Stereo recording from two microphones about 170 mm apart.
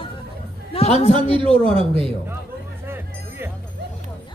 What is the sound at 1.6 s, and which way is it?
Speech, 30° right (ahead or behind).